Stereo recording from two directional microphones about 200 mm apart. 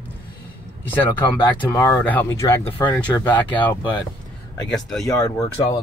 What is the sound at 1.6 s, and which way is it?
Speech, 10° left (ahead or behind).